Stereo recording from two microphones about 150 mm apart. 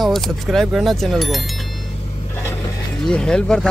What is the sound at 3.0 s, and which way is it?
Speech, 5° left (ahead or behind).